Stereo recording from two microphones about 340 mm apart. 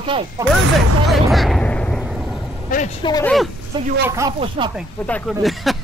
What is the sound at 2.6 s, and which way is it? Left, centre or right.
Speech, left.